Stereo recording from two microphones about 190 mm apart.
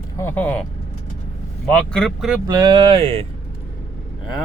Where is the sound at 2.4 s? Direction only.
20° right (ahead or behind).